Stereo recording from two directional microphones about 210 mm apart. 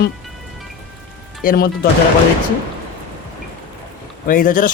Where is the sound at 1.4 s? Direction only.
45° left (ahead or behind).